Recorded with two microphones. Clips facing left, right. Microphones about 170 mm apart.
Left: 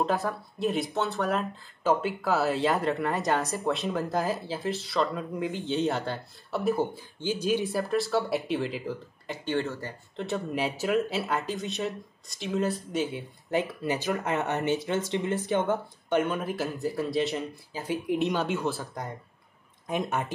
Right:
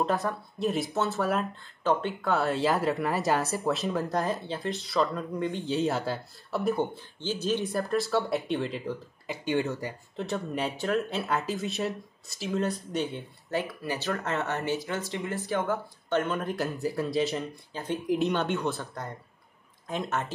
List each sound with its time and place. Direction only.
0.0 s speech: centre (ahead or behind)
9.4 s speech: 15° right (ahead or behind)
10.1 s speech: centre (ahead or behind)
13.5 s speech: 20° left (ahead or behind); by 18.9 s centre (ahead or behind)
19.9 s speech: 15° left (ahead or behind)